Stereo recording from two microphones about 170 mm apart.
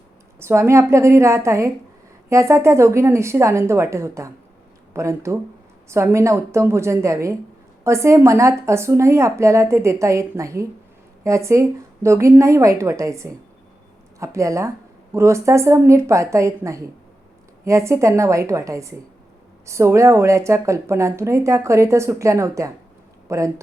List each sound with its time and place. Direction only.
0.3 s speech: 15° right (ahead or behind)